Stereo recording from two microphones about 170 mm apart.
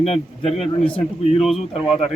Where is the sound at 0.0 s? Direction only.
40° left (ahead or behind).